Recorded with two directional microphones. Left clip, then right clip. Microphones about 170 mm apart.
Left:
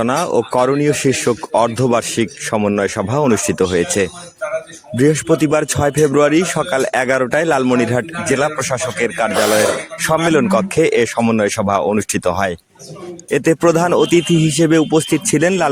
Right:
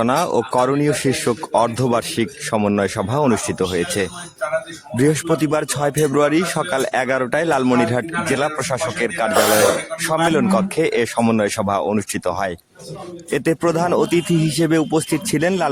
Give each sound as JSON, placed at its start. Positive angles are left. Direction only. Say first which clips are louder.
{"t": 0.0, "sound": "a man's voice", "louder": "left 2 dB", "side_deg": 10}
{"t": 7.6, "sound": "a man's voice", "louder": "left 2 dB", "side_deg": 5}
{"t": 7.9, "sound": "a man's voice", "louder": "left 2 dB", "side_deg": 15}